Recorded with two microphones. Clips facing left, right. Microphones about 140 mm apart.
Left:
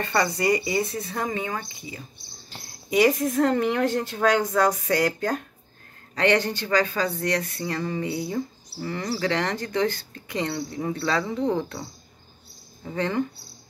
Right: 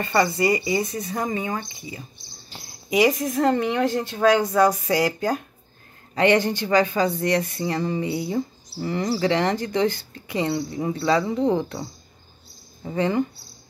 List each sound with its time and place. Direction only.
0.0 s a woman's voice: 5° right (ahead or behind)
1.3 s speech: 15° right (ahead or behind)
3.2 s a woman's voice: centre (ahead or behind); by 11.8 s 15° right (ahead or behind)
12.9 s speech: 10° right (ahead or behind)